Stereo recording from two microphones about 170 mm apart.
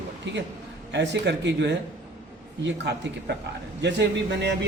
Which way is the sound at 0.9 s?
90° right.